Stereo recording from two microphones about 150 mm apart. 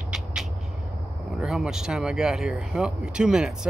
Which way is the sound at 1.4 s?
5° right (ahead or behind).